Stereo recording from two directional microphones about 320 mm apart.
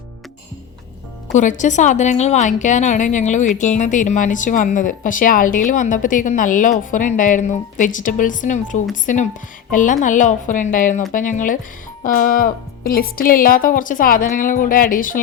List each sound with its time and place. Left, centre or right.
1.3 s a woman's voice: left